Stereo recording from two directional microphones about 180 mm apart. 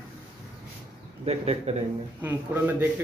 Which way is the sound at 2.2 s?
10° right (ahead or behind).